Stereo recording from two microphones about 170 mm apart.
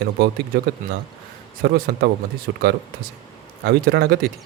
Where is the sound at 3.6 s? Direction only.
70° right (ahead or behind).